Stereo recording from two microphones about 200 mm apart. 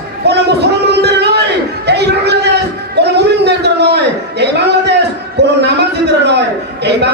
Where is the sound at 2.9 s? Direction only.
55° right (ahead or behind).